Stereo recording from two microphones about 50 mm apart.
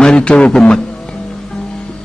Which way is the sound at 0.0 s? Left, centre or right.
Centre.